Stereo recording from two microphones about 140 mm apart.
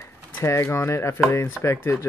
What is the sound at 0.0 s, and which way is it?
Speech, 20° left (ahead or behind).